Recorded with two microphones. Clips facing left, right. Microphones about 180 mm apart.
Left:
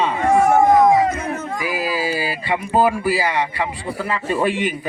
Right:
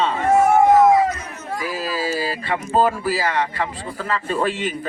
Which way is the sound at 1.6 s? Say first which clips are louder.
Left 1 dB; 10° left (ahead or behind).